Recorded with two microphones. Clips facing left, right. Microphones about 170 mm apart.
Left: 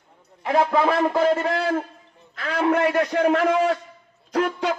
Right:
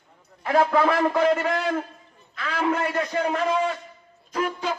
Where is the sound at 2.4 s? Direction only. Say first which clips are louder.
Left 4 dB; 50° left (ahead or behind).